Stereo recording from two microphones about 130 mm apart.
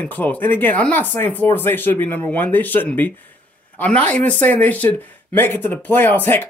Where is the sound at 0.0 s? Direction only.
15° left (ahead or behind).